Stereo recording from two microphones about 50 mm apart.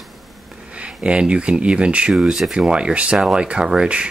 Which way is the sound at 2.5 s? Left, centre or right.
Centre.